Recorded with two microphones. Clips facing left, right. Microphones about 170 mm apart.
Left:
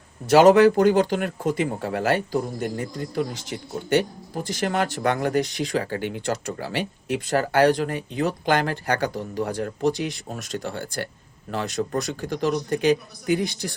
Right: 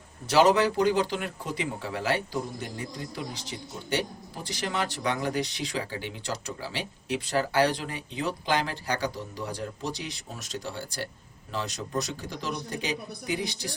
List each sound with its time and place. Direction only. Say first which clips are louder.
0.3 s speech: left 8 dB; 50° left (ahead or behind)